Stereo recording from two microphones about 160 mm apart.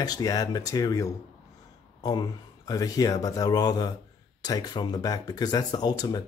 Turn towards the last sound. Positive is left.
turn(degrees=25)  # may be behind; listen again after turning